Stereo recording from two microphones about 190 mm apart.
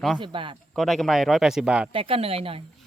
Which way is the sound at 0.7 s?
Centre (ahead or behind).